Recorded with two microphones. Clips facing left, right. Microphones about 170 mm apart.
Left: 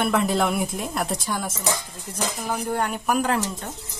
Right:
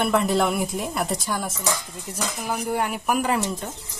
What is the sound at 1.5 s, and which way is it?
Speech, 20° left (ahead or behind).